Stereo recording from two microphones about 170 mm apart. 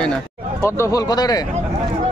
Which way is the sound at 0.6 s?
15° left (ahead or behind).